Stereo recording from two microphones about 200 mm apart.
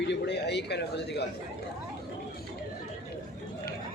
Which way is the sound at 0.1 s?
60° left (ahead or behind).